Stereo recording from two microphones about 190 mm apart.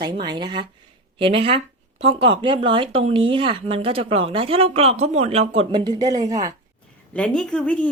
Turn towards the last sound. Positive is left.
turn(degrees=5)  # may be behind; listen again after turning